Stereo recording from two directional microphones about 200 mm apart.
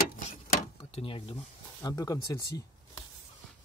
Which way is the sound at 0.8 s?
25° left (ahead or behind).